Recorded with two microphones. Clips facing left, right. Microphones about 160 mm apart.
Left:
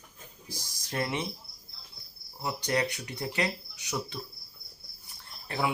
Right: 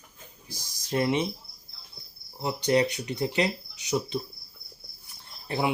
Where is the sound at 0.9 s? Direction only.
20° right (ahead or behind).